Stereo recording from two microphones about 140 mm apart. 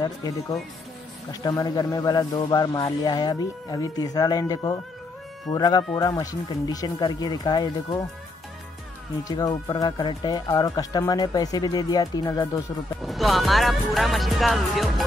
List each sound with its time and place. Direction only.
0.0 s speech: 25° left (ahead or behind)
9.3 s speech: 30° left (ahead or behind)
13.0 s speech: centre (ahead or behind)